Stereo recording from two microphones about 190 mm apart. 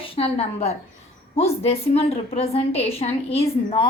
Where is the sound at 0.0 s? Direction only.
30° left (ahead or behind).